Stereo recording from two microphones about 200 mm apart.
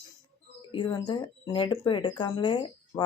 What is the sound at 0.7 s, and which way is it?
Speech, 25° left (ahead or behind).